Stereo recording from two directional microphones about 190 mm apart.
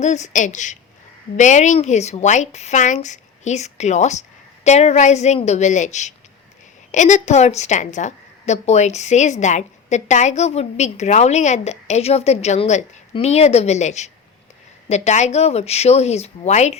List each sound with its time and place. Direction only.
0.0 s a woman's voice: 40° left (ahead or behind)